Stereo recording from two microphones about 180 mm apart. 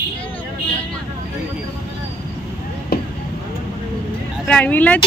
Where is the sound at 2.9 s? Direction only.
60° left (ahead or behind).